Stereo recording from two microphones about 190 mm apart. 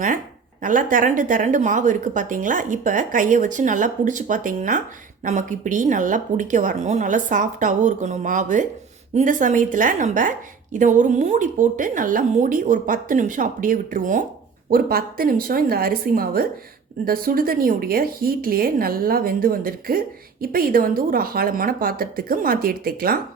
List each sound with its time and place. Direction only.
0.6 s a woman's voice: 45° right (ahead or behind)